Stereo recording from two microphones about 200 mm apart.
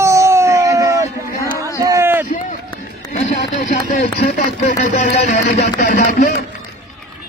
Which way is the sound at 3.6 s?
40° left (ahead or behind).